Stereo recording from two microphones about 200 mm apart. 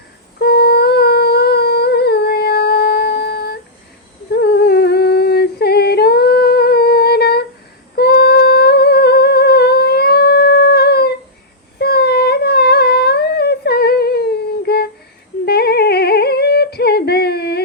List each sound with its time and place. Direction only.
0.3 s humming: 50° left (ahead or behind)